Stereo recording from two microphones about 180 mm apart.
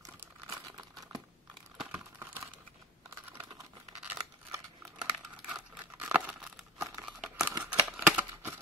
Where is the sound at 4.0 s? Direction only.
10° right (ahead or behind).